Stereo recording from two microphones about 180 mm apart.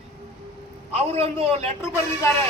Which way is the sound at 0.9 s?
35° right (ahead or behind).